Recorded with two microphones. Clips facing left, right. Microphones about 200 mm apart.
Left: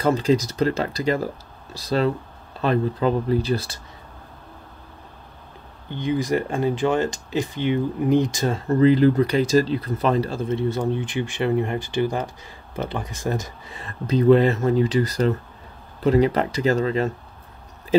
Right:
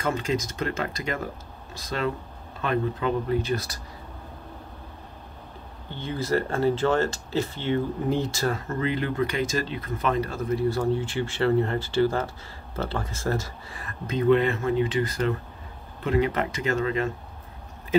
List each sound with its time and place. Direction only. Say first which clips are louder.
0.0 s speech: left 7 dB; 35° left (ahead or behind)
5.9 s speech: left 5 dB; 15° left (ahead or behind)
8.5 s speech: left 11 dB; 35° left (ahead or behind)
14.0 s speech: left 5 dB; 35° left (ahead or behind)